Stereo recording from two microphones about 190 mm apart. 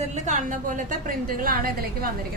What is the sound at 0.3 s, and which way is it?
A woman's voice, 40° right (ahead or behind).